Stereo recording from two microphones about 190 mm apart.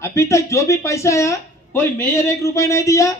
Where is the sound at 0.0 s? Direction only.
15° left (ahead or behind).